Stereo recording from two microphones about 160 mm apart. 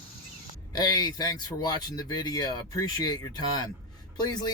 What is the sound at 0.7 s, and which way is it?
Speech, 25° left (ahead or behind).